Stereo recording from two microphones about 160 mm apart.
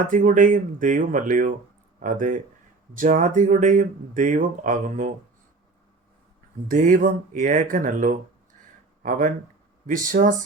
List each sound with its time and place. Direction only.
0.1 s speech: 55° right (ahead or behind)
6.7 s speech: 55° right (ahead or behind)